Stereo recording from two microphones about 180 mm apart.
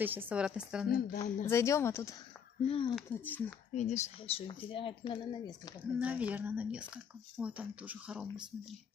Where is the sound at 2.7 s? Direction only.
30° left (ahead or behind).